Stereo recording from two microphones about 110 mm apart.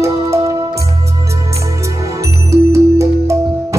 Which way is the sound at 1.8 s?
30° right (ahead or behind).